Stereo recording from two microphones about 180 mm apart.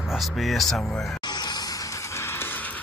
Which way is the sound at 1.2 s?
25° left (ahead or behind).